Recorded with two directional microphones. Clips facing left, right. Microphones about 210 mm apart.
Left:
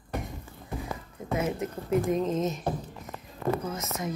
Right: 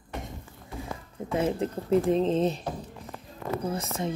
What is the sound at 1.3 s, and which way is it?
Speech, 30° right (ahead or behind).